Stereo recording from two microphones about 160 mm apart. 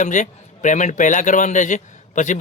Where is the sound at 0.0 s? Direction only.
50° left (ahead or behind).